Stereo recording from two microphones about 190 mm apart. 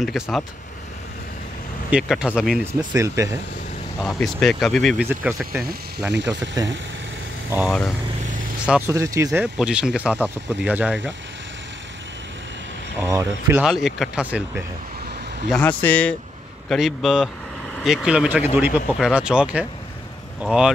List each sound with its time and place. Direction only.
0.0 s speech: centre (ahead or behind)
1.9 s speech: 5° right (ahead or behind)
2.6 s speech: 15° right (ahead or behind)
4.0 s speech: centre (ahead or behind)
5.2 s speech: 10° right (ahead or behind)
6.1 s speech: 70° right (ahead or behind)
8.6 s speech: 5° right (ahead or behind)
8.9 s speech: 15° right (ahead or behind)
13.0 s speech: 15° right (ahead or behind)
15.5 s speech: 5° left (ahead or behind)